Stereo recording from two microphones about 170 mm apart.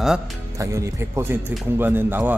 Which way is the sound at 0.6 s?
20° right (ahead or behind).